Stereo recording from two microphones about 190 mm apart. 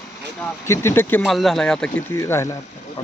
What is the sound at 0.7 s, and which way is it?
Speech, 15° left (ahead or behind).